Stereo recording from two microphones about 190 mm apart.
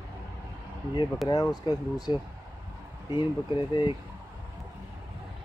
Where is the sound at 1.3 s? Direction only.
20° left (ahead or behind).